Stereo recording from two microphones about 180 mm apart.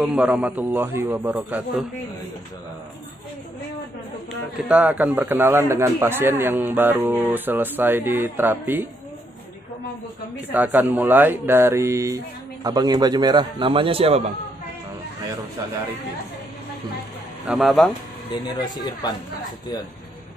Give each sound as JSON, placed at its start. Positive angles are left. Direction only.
{"t": 0.0, "sound": "a man's voice", "side_deg": -5}
{"t": 4.6, "sound": "a man's voice", "side_deg": -5}
{"t": 10.5, "sound": "a man's voice", "side_deg": -10}
{"t": 17.5, "sound": "speech", "side_deg": 0}
{"t": 18.3, "sound": "speech", "side_deg": 20}